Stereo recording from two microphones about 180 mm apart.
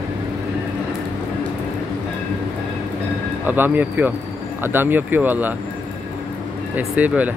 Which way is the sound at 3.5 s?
10° right (ahead or behind).